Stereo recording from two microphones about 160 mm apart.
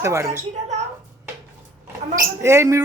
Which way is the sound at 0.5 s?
45° right (ahead or behind).